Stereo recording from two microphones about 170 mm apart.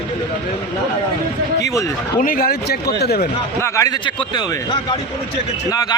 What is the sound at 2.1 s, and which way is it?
Speech, 55° left (ahead or behind).